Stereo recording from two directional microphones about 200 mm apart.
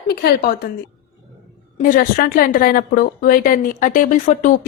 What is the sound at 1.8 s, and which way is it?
A woman's voice, 45° left (ahead or behind).